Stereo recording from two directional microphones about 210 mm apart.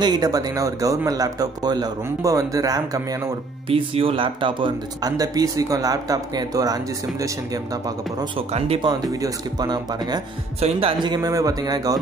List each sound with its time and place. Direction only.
0.0 s speech: 20° right (ahead or behind)
8.5 s speech: 30° right (ahead or behind)